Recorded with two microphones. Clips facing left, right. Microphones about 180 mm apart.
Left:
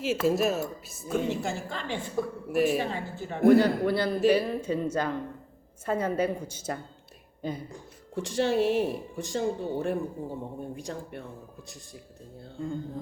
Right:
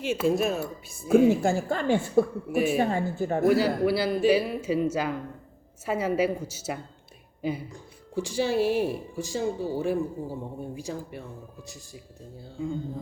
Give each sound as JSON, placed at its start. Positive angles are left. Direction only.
{"t": 0.0, "sound": "speech", "side_deg": 5}
{"t": 1.4, "sound": "a woman's voice", "side_deg": -50}
{"t": 2.5, "sound": "speech", "side_deg": -5}
{"t": 2.7, "sound": "a woman's voice", "side_deg": -45}
{"t": 3.4, "sound": "speech", "side_deg": -5}
{"t": 8.1, "sound": "speech", "side_deg": 0}